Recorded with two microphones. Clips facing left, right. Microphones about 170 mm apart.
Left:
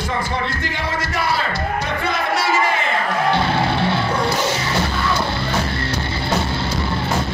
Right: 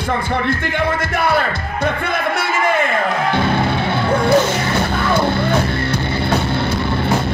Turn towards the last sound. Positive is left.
turn(degrees=-55)  # may be behind; listen again after turning